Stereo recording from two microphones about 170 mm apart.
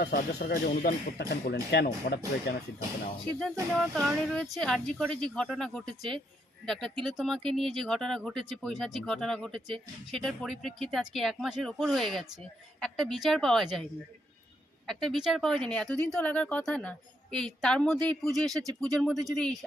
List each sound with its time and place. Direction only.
0.0 s speech: 70° left (ahead or behind)
3.8 s speech: centre (ahead or behind)
14.8 s speech: centre (ahead or behind)